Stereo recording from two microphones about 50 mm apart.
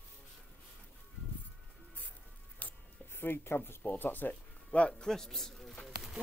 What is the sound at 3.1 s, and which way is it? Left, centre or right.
Speech, left.